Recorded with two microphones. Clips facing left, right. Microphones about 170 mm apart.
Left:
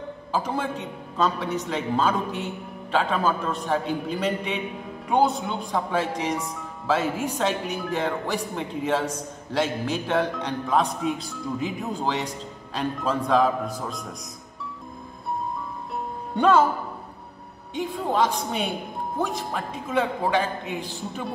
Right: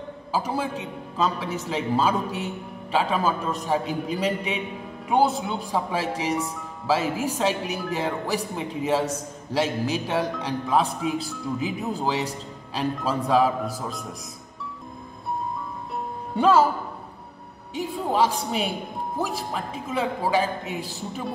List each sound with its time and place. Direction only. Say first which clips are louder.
0.3 s speech: even; 10° right (ahead or behind)
16.3 s speech: even; 5° right (ahead or behind)
17.7 s speech: even; 5° right (ahead or behind)